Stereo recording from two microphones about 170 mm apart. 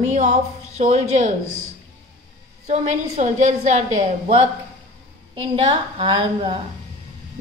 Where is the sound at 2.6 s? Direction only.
45° right (ahead or behind).